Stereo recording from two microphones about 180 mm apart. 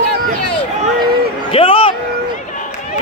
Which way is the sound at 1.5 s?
30° left (ahead or behind).